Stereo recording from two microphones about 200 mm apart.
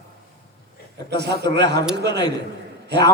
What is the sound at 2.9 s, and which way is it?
Speech, 55° right (ahead or behind).